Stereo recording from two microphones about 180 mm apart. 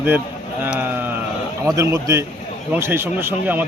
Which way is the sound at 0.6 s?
10° right (ahead or behind).